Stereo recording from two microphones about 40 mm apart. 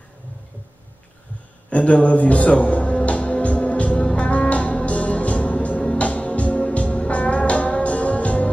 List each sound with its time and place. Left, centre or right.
1.7 s music: left